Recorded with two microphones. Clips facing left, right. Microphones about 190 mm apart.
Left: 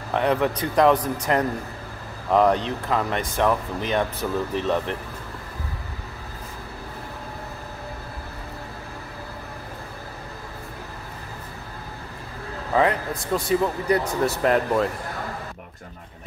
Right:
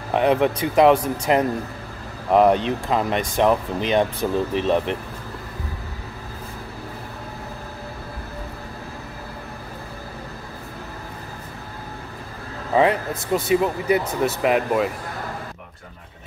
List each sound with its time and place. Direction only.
0.1 s speech: 20° right (ahead or behind)
1.1 s a man's voice: 10° right (ahead or behind)
12.7 s a man's voice: 20° right (ahead or behind)